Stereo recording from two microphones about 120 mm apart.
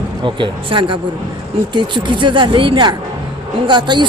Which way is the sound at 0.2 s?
40° right (ahead or behind).